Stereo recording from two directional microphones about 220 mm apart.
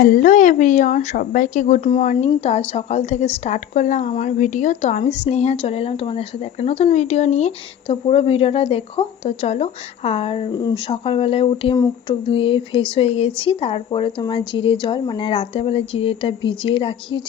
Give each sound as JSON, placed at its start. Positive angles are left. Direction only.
{"t": 0.0, "sound": "speech", "side_deg": 40}